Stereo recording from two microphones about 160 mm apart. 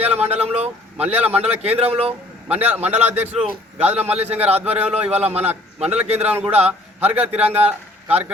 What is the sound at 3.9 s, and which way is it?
Speech, 40° right (ahead or behind).